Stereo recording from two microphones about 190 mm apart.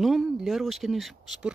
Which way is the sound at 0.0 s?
Centre (ahead or behind).